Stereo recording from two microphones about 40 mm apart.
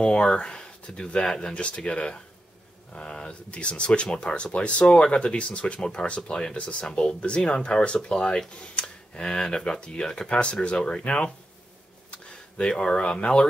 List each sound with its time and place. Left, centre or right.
0.0 s speech: left
1.1 s speech: centre
1.5 s speech: left
8.5 s a sound: left
9.7 s speech: left
12.1 s a sound: left
13.0 s speech: left